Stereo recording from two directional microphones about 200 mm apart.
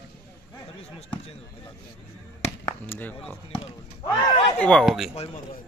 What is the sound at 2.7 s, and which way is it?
Speech, 10° left (ahead or behind).